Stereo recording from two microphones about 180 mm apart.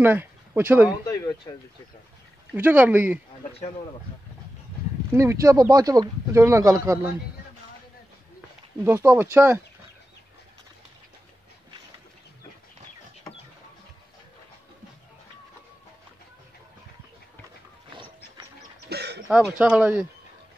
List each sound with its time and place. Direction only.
0.0 s speech: 10° right (ahead or behind)
1.0 s speech: 20° left (ahead or behind)
2.5 s speech: 10° right (ahead or behind)
5.1 s speech: 15° right (ahead or behind)
8.8 s speech: 10° right (ahead or behind)
18.9 s a sound: 65° right (ahead or behind)
19.2 s speech: 5° right (ahead or behind)